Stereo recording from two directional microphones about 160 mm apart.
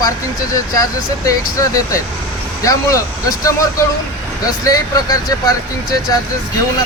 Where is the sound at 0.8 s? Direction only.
20° left (ahead or behind).